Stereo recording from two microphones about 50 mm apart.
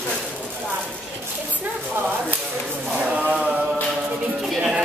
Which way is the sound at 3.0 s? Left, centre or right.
Right.